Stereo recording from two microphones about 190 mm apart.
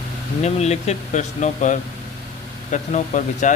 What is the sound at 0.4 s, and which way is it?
Speech, 35° left (ahead or behind).